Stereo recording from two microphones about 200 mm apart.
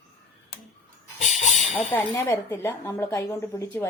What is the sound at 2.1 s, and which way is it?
Speech, 10° left (ahead or behind).